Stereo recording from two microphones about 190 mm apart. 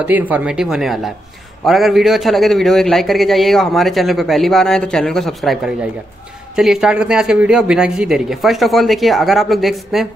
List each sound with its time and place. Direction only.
0.0 s a man's voice: 10° right (ahead or behind)